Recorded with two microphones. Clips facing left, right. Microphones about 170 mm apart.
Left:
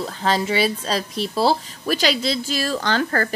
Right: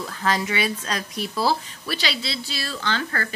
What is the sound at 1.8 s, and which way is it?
Speech, 45° left (ahead or behind).